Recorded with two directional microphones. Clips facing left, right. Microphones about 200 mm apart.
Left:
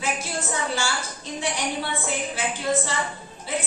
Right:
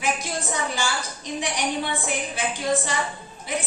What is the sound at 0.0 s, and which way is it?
A woman's voice, 15° right (ahead or behind).